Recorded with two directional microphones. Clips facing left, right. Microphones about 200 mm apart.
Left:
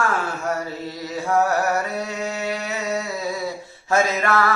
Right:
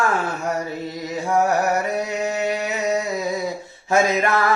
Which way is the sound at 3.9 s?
15° right (ahead or behind).